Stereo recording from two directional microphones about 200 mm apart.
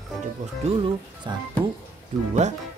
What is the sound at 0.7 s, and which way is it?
Speech, 25° right (ahead or behind).